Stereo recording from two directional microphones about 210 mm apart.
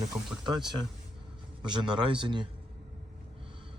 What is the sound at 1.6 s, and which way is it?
Speech, 20° right (ahead or behind).